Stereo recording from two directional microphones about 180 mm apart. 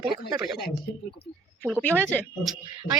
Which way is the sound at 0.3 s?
5° right (ahead or behind).